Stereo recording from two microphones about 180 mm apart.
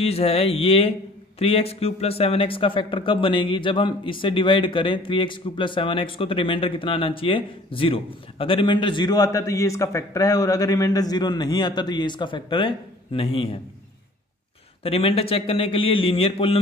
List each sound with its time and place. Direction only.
0.0 s a man's voice: 35° left (ahead or behind)
14.8 s a man's voice: 30° left (ahead or behind)